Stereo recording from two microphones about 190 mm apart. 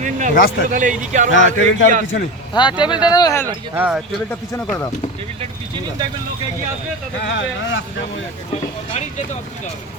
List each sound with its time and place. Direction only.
0.0 s a sound: 40° right (ahead or behind)
0.3 s speech: 55° left (ahead or behind)
0.7 s speech: 40° right (ahead or behind)
1.3 s speech: 75° left (ahead or behind)
2.5 s speech: 25° left (ahead or behind)
3.8 s speech: 5° right (ahead or behind)
6.0 s speech: 20° right (ahead or behind)
7.3 s speech: 85° left